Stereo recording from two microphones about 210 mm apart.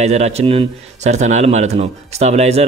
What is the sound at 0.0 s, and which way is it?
Speech, 30° right (ahead or behind).